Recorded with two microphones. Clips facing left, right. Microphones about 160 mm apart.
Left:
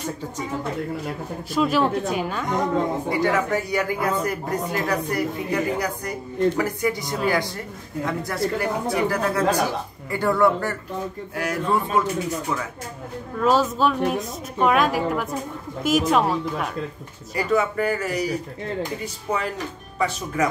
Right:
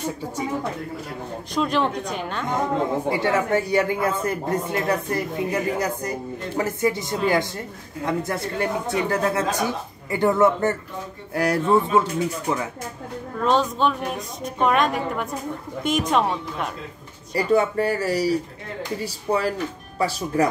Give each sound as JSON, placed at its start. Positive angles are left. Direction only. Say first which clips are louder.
{"t": 1.5, "sound": "a woman's voice", "louder": "left 2 dB", "side_deg": 5}
{"t": 3.1, "sound": "speech", "louder": "right 1 dB", "side_deg": -25}
{"t": 11.3, "sound": "speech", "louder": "right 5 dB", "side_deg": -35}
{"t": 13.4, "sound": "a woman's voice", "louder": "left 1 dB", "side_deg": 5}
{"t": 17.3, "sound": "speech", "louder": "right 2 dB", "side_deg": -30}